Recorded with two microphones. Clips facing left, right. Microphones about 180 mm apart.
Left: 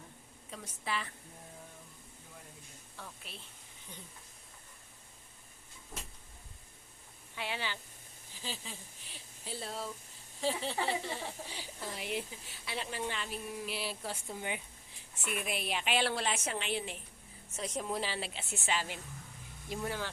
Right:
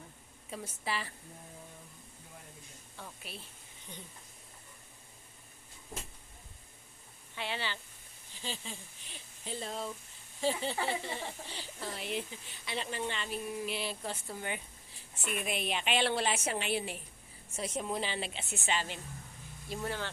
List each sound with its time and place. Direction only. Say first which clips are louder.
0.6 s a woman's voice: even; 30° right (ahead or behind)
3.0 s speech: right 2 dB; 5° right (ahead or behind)
7.3 s speech: right 1 dB; 10° left (ahead or behind)
15.2 s speech: right 2 dB; centre (ahead or behind)